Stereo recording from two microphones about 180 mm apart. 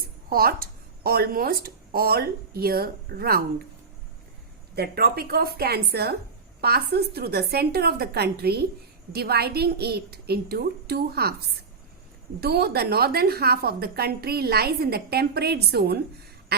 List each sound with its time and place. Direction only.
0.3 s speech: 55° right (ahead or behind)
4.7 s a woman's voice: 60° right (ahead or behind)
12.4 s a woman's voice: 60° right (ahead or behind)
16.5 s a sound: 65° right (ahead or behind)